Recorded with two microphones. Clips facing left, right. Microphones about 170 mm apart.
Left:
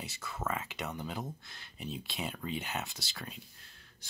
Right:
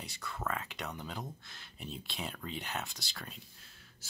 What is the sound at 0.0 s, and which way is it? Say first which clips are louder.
Speech: left 1 dB; 5° left (ahead or behind).